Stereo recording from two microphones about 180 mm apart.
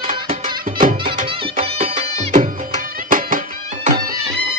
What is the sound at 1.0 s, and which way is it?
Music, 30° right (ahead or behind).